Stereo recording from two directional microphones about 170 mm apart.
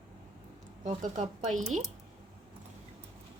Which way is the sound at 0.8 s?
45° right (ahead or behind).